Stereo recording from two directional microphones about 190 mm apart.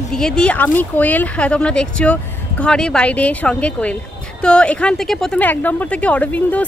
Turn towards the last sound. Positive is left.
turn(degrees=5)  # may be behind; listen again after turning